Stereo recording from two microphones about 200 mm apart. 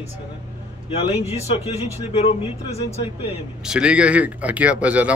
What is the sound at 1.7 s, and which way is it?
Speech, 30° left (ahead or behind).